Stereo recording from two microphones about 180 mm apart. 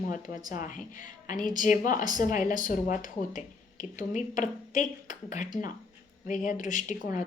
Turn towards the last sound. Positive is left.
turn(degrees=45)  # may be behind; listen again after turning